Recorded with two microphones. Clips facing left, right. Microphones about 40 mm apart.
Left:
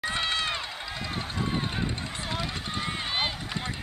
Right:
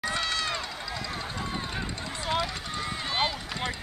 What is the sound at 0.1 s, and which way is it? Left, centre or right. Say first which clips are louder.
Run: left 1 dB; left.